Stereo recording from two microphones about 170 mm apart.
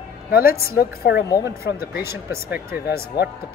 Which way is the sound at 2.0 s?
15° right (ahead or behind).